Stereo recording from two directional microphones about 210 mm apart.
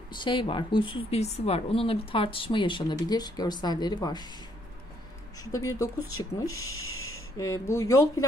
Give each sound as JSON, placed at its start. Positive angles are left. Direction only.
{"t": 0.1, "sound": "speech", "side_deg": 25}
{"t": 5.4, "sound": "speech", "side_deg": 15}
{"t": 6.7, "sound": "a sound", "side_deg": 75}
{"t": 7.3, "sound": "speech", "side_deg": 15}